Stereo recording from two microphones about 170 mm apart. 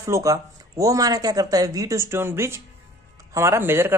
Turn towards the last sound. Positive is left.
turn(degrees=-15)  # may be behind; listen again after turning